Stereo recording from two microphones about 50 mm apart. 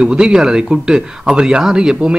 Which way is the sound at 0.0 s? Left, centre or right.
Centre.